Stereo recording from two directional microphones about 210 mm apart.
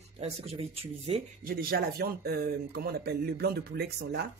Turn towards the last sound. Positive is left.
turn(degrees=-50)  # may be behind; listen again after turning